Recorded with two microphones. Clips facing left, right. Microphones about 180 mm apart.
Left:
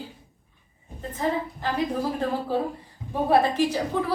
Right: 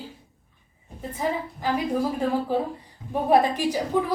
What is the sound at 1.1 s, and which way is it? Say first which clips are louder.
Speech: left 1 dB; 10° right (ahead or behind).